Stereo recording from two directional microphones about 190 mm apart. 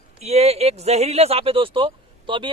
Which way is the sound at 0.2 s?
35° right (ahead or behind).